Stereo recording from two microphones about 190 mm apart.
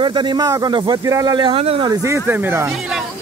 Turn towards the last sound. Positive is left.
turn(degrees=0)  # may be behind; listen again after turning